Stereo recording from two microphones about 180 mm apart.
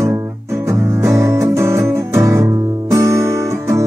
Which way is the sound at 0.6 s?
15° right (ahead or behind).